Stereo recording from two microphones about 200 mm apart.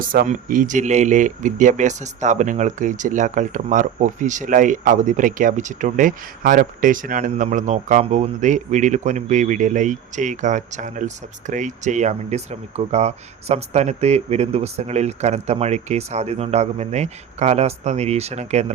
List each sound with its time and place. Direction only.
0.0 s speech: 45° right (ahead or behind)